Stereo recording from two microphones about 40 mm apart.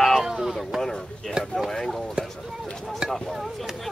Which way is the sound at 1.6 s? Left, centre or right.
Centre.